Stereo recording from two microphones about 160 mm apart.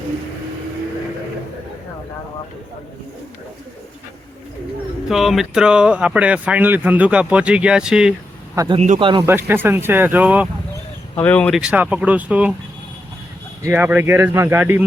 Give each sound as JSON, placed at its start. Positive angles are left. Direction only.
{"t": 5.0, "sound": "speech", "side_deg": 0}
{"t": 8.5, "sound": "a man's voice", "side_deg": -30}
{"t": 9.2, "sound": "speech", "side_deg": -15}
{"t": 11.2, "sound": "speech", "side_deg": 10}
{"t": 11.6, "sound": "speech", "side_deg": -10}
{"t": 13.7, "sound": "speech", "side_deg": -10}